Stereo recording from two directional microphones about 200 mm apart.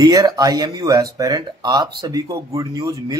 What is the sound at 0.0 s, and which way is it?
A man's voice, 20° right (ahead or behind).